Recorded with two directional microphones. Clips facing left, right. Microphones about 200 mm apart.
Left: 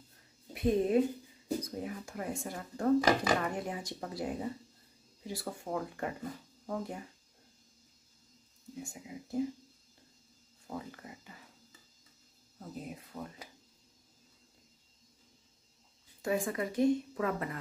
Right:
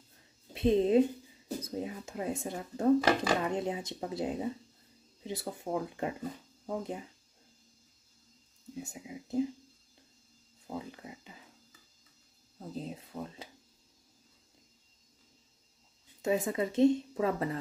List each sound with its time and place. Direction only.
0.5 s a woman's voice: 25° right (ahead or behind)
3.0 s speech: 15° left (ahead or behind)
3.4 s speech: 20° right (ahead or behind)
8.7 s speech: 20° right (ahead or behind)
10.7 s a sound: 15° right (ahead or behind)
12.5 s speech: 25° right (ahead or behind)
16.2 s speech: 20° right (ahead or behind)